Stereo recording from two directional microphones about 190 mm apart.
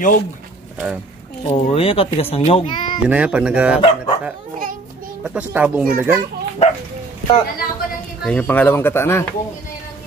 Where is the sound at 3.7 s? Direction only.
30° left (ahead or behind).